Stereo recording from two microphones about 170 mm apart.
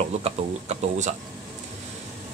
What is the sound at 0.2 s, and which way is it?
Speech, 40° right (ahead or behind).